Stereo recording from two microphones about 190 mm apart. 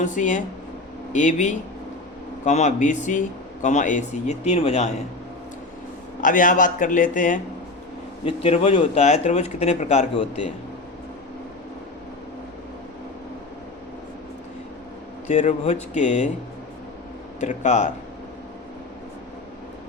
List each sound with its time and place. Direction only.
0.0 s speech: 40° left (ahead or behind)
6.2 s a man's voice: 45° left (ahead or behind)
8.2 s speech: 35° left (ahead or behind)
15.3 s speech: 35° left (ahead or behind)
17.4 s speech: 40° left (ahead or behind)